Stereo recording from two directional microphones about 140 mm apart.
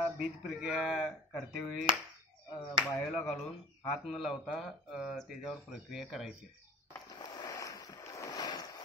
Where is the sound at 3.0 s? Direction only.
Centre (ahead or behind).